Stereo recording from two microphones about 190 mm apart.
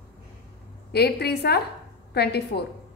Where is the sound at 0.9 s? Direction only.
60° left (ahead or behind).